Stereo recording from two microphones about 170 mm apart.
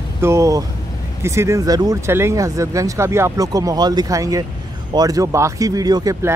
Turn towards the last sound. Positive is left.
turn(degrees=-20)  # may be behind; listen again after turning